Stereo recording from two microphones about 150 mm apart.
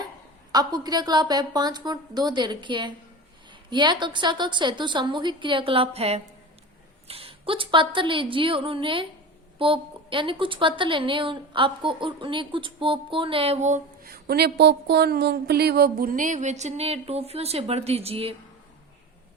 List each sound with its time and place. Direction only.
0.5 s a woman's voice: 25° right (ahead or behind); by 13.8 s 50° right (ahead or behind)
14.0 s speech: 90° right; by 18.3 s 40° right (ahead or behind)